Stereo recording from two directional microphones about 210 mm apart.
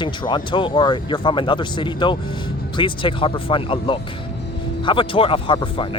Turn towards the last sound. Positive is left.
turn(degrees=25)  # may be behind; listen again after turning